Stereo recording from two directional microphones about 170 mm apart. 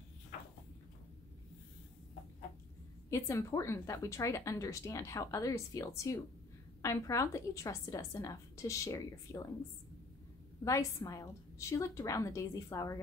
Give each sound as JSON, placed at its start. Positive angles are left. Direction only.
{"t": 3.1, "sound": "a woman's voice", "side_deg": 15}
{"t": 10.6, "sound": "a woman's voice", "side_deg": 20}